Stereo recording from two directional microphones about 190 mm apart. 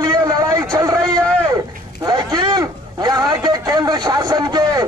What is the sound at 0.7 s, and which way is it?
Vehicle, 20° right (ahead or behind).